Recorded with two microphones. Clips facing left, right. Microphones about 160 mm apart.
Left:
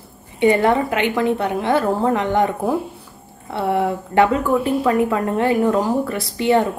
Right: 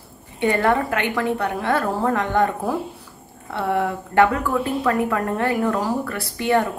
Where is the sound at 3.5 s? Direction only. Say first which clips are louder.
Left 3 dB; 25° left (ahead or behind).